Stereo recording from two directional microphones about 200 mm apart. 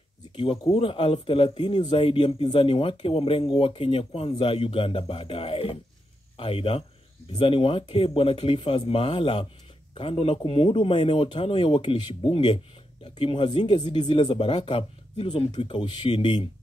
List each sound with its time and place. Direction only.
0.4 s speech: 30° left (ahead or behind)